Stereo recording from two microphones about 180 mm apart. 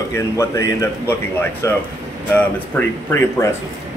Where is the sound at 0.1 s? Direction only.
15° left (ahead or behind).